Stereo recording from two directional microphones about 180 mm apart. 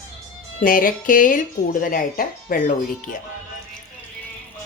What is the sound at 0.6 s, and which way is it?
Speech, 50° left (ahead or behind).